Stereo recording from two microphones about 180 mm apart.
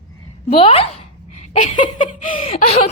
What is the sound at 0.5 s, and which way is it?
Laughter, 30° left (ahead or behind).